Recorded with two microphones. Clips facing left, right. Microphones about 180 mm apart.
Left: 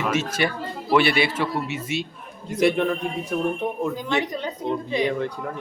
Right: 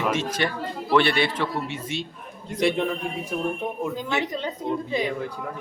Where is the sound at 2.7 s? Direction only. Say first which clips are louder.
Left 3 dB; 15° right (ahead or behind).